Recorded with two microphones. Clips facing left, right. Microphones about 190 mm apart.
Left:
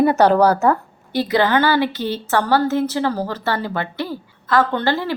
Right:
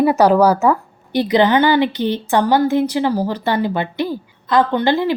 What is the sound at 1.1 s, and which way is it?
A woman's voice, 20° right (ahead or behind).